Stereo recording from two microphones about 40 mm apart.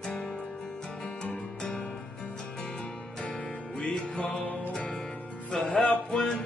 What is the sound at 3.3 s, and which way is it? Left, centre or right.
Music, left.